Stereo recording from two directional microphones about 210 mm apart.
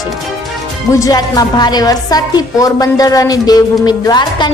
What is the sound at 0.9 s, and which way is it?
A woman's voice, 15° left (ahead or behind).